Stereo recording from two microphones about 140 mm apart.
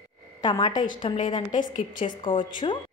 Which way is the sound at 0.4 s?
30° left (ahead or behind).